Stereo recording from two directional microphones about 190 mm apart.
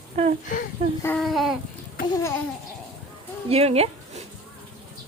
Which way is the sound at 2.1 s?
15° left (ahead or behind).